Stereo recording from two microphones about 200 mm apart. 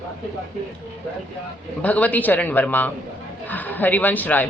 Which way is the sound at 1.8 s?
5° left (ahead or behind).